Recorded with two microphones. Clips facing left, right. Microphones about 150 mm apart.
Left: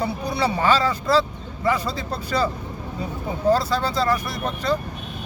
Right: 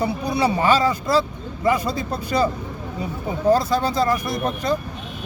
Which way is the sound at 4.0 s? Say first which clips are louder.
Right 2 dB; 15° right (ahead or behind).